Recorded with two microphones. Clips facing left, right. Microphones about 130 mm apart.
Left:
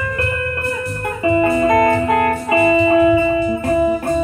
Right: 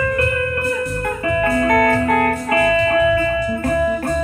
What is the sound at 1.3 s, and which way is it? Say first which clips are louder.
Music: left 3 dB; 15° left (ahead or behind).